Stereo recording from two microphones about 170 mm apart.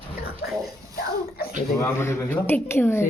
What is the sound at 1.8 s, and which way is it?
Speech, 15° left (ahead or behind).